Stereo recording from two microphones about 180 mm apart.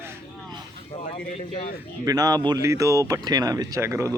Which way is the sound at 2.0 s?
20° right (ahead or behind).